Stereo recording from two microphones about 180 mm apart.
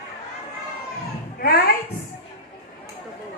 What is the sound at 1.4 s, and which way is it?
Music, 60° left (ahead or behind).